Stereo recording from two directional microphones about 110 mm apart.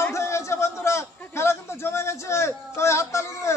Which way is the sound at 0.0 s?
25° left (ahead or behind).